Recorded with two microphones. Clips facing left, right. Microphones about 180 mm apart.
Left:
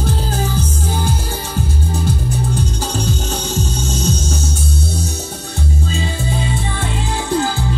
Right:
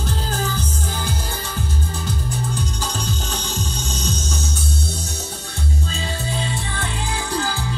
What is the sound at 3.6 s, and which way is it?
Music, 50° left (ahead or behind).